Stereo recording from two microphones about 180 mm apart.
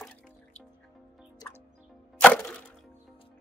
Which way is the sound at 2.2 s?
5° left (ahead or behind).